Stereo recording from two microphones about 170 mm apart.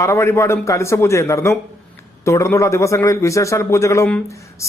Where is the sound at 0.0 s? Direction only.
15° left (ahead or behind).